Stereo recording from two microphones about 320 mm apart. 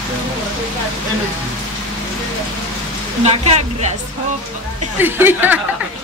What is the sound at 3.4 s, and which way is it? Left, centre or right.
Speech, centre.